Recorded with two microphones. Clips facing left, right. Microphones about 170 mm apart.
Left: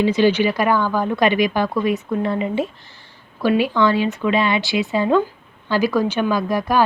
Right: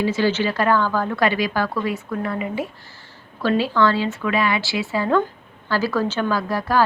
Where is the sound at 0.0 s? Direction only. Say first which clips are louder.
Left 4 dB; 20° left (ahead or behind).